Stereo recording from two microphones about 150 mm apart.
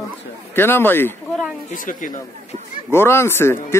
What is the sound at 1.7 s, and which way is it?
Speech, 60° left (ahead or behind).